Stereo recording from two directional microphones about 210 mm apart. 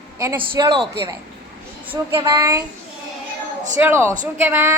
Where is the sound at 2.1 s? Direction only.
20° right (ahead or behind).